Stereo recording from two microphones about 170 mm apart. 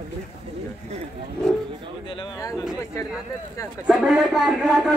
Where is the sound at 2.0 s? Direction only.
25° left (ahead or behind).